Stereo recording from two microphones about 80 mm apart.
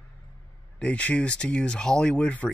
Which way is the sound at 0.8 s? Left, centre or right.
Centre.